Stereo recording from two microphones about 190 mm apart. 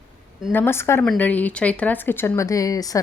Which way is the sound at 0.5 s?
10° left (ahead or behind).